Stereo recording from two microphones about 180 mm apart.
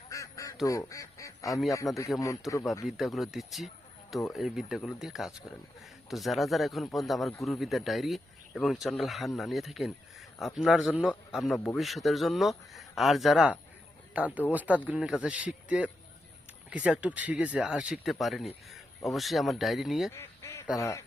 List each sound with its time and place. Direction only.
0.1 s duck: 15° left (ahead or behind)
0.6 s speech: 15° left (ahead or behind)
1.9 s speech: centre (ahead or behind)
20.1 s goose: 15° left (ahead or behind)
20.7 s speech: 15° left (ahead or behind)